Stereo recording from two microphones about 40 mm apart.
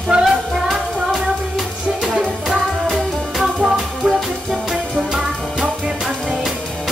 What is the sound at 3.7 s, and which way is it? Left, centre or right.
Music, centre.